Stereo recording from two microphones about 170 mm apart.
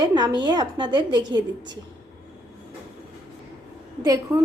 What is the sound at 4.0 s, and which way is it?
Speech, 20° right (ahead or behind).